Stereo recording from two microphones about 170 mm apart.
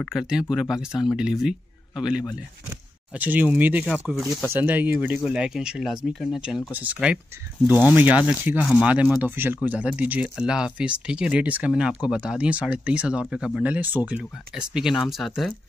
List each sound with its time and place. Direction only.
0.0 s speech: centre (ahead or behind)